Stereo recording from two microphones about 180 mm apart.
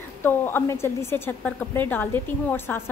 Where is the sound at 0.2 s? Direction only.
10° left (ahead or behind).